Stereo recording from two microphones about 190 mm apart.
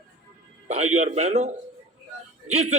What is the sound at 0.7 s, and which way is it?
Speech, 35° right (ahead or behind).